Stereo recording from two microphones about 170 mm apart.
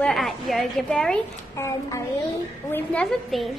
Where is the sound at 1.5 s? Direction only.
15° left (ahead or behind).